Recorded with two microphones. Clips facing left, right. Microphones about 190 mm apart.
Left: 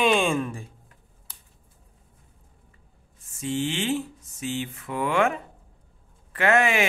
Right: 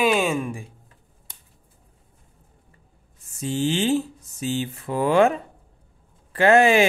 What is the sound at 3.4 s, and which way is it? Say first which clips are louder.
Speech: right 4 dB; 35° right (ahead or behind).